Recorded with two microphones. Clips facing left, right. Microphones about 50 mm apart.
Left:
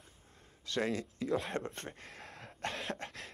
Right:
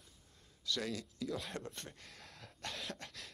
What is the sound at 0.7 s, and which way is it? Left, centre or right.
Speech, left.